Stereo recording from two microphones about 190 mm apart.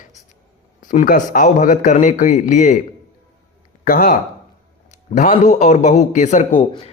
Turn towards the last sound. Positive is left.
turn(degrees=40)  # may be behind; listen again after turning